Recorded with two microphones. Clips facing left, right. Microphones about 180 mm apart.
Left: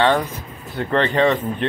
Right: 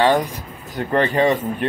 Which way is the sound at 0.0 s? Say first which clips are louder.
Right 1 dB; 10° right (ahead or behind).